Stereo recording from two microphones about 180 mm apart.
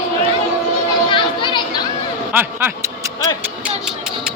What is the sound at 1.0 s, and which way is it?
Children playing, 25° left (ahead or behind).